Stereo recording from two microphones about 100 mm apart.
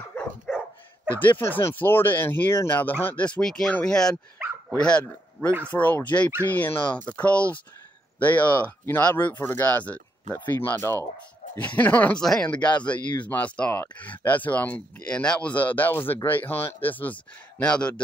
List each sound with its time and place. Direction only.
0.5 s dog: centre (ahead or behind)
1.2 s a man's voice: 20° left (ahead or behind)